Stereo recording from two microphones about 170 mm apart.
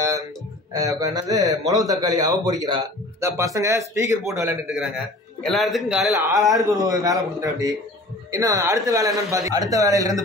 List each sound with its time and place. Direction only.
0.7 s a man's voice: 20° right (ahead or behind)
4.6 s a man's voice: 5° right (ahead or behind)
6.1 s a man's voice: 20° right (ahead or behind)